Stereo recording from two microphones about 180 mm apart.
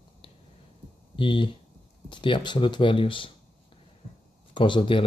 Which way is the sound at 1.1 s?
30° left (ahead or behind).